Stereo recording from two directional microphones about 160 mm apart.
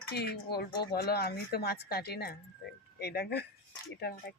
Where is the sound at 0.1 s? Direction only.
90° left.